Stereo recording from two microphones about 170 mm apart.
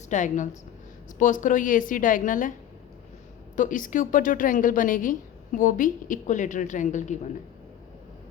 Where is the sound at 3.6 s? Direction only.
50° left (ahead or behind).